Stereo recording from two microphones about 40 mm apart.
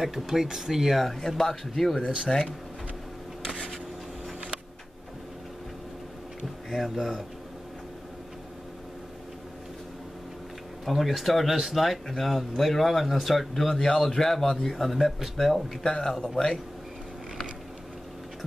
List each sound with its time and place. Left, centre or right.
0.0 s speech: centre
0.9 s speech: centre
6.7 s speech: centre
10.9 s speech: centre
13.7 s speech: centre
15.8 s speech: centre